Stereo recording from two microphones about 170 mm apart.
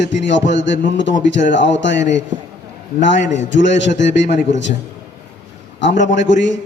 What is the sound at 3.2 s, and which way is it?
Speech, 45° left (ahead or behind).